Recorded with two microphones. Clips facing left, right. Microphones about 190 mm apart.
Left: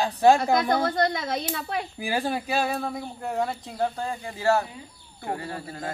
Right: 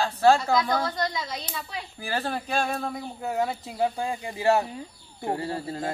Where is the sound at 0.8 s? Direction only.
55° left (ahead or behind).